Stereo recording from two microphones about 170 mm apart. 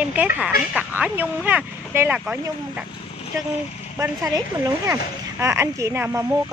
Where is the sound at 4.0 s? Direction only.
20° right (ahead or behind).